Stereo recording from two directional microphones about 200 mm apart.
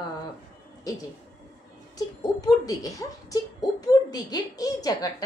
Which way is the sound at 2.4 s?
20° left (ahead or behind).